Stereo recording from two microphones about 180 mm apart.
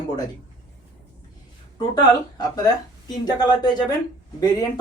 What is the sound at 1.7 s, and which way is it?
Speech, 25° left (ahead or behind).